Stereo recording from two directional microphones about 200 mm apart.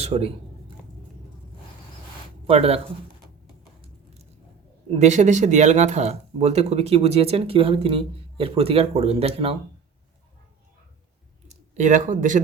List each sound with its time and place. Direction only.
0.0 s speech: 30° right (ahead or behind)
2.5 s speech: 30° right (ahead or behind)
4.9 s speech: 35° right (ahead or behind)
11.8 s speech: 40° right (ahead or behind)